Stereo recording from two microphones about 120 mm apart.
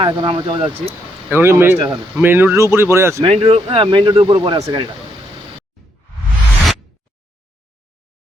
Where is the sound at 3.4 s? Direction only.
45° right (ahead or behind).